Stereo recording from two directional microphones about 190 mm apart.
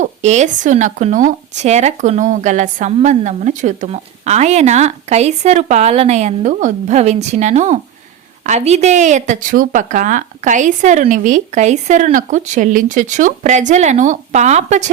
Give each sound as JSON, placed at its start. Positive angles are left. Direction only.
{"t": 0.0, "sound": "speech", "side_deg": -40}